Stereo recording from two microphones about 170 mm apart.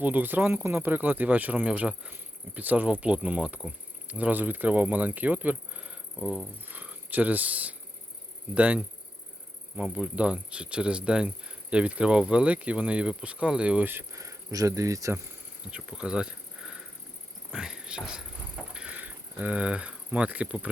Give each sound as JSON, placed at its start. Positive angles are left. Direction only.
{"t": 0.0, "sound": "speech", "side_deg": -10}
{"t": 15.7, "sound": "speech", "side_deg": -5}
{"t": 17.5, "sound": "insect", "side_deg": -5}
{"t": 18.7, "sound": "a sound", "side_deg": -5}